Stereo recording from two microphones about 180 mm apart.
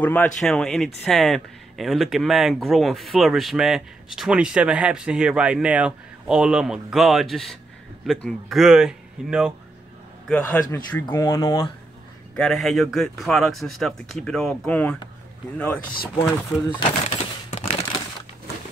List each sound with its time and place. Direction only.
0.0 s speech: 10° left (ahead or behind)
10.2 s a man's voice: 5° left (ahead or behind)
12.4 s a man's voice: centre (ahead or behind)
17.0 s crumpling: 35° left (ahead or behind)